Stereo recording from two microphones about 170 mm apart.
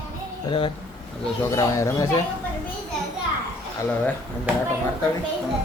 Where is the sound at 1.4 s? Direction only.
15° left (ahead or behind).